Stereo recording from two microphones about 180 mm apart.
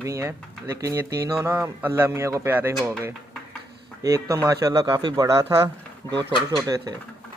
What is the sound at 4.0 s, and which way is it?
Speech, 15° right (ahead or behind).